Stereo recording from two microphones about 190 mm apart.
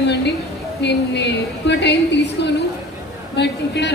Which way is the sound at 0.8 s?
65° left (ahead or behind).